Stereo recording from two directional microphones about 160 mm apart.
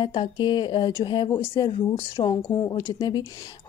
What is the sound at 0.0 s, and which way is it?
A woman's voice, 30° left (ahead or behind).